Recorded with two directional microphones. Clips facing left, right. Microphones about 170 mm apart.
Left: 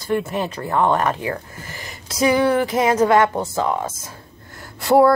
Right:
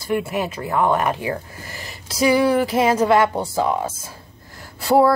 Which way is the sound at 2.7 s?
30° right (ahead or behind).